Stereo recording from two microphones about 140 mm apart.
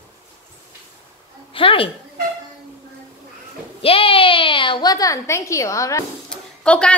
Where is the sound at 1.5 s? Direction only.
40° left (ahead or behind).